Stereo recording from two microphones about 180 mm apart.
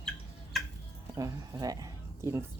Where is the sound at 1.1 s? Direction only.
20° right (ahead or behind).